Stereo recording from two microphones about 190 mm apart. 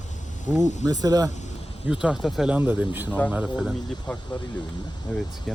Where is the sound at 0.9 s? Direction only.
20° right (ahead or behind).